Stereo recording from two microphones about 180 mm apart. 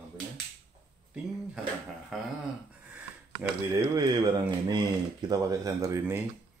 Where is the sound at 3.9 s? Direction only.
25° right (ahead or behind).